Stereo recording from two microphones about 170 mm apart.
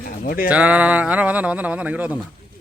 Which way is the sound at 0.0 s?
55° left (ahead or behind).